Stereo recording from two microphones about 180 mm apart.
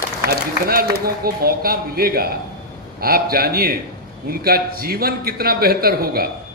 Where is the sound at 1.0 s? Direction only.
55° right (ahead or behind).